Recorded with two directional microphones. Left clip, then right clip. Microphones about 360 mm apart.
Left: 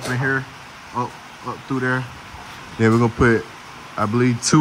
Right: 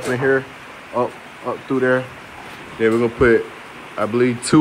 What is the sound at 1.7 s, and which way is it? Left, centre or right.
Speech, centre.